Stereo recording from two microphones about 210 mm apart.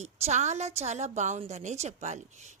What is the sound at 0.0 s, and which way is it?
A woman's voice, 35° right (ahead or behind).